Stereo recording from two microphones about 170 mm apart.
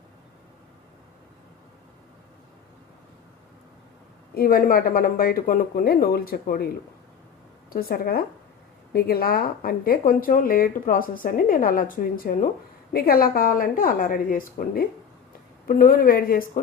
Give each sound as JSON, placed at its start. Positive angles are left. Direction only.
{"t": 4.4, "sound": "speech", "side_deg": 60}
{"t": 7.7, "sound": "speech", "side_deg": 60}